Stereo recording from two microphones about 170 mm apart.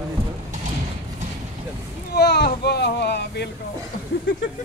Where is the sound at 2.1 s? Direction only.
70° left (ahead or behind).